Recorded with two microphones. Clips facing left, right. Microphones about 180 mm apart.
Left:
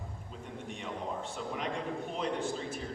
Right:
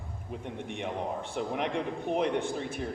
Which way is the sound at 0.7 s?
65° right (ahead or behind).